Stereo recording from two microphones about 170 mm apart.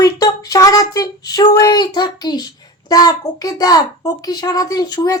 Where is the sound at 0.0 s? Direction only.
20° left (ahead or behind).